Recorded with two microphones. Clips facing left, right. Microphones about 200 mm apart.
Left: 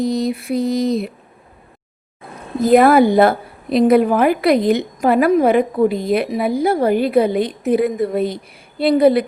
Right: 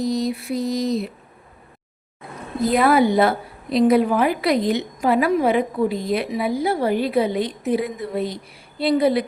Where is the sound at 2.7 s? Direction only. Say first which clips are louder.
Left 6 dB; 50° left (ahead or behind).